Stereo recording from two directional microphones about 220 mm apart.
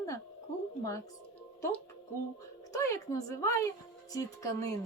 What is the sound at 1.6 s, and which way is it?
Speech, 5° left (ahead or behind).